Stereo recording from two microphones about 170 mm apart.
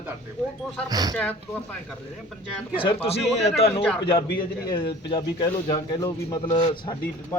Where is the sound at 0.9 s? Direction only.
25° right (ahead or behind).